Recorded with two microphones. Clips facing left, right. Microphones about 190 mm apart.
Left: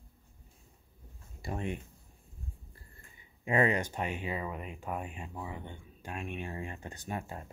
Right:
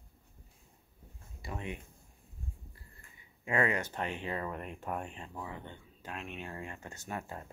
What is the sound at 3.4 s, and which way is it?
Speech, 20° left (ahead or behind).